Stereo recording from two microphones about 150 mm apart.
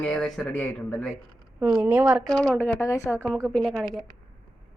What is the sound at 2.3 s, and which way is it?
Speech, 25° right (ahead or behind).